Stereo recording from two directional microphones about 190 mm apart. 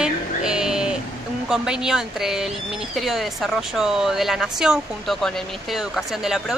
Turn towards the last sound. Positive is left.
turn(degrees=-5)  # may be behind; listen again after turning